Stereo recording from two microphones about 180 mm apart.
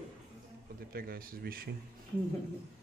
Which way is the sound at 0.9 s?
55° right (ahead or behind).